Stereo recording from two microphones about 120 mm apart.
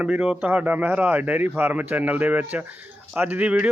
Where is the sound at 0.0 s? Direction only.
10° right (ahead or behind).